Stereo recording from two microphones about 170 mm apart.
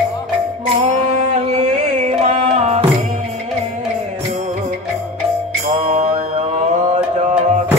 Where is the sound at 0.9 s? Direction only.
40° right (ahead or behind).